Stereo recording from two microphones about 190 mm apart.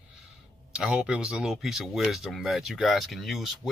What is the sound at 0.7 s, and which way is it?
Speech, 5° right (ahead or behind).